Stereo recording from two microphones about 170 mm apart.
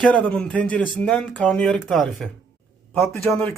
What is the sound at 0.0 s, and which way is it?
A man's voice, 5° left (ahead or behind).